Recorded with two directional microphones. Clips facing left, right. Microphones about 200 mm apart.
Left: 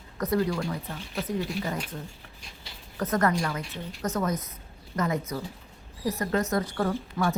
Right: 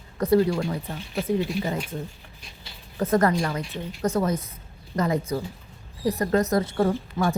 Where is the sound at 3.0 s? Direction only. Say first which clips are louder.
Right 4 dB; 30° right (ahead or behind).